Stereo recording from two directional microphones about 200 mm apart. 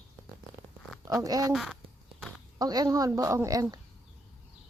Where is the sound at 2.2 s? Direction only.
5° right (ahead or behind).